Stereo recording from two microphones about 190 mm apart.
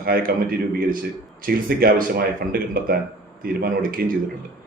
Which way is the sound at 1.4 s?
50° right (ahead or behind).